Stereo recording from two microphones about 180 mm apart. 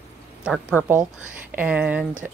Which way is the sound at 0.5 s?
Centre (ahead or behind).